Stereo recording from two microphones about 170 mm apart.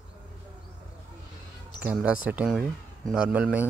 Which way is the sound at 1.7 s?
5° right (ahead or behind).